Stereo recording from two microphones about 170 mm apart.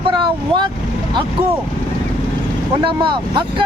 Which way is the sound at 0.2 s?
30° right (ahead or behind).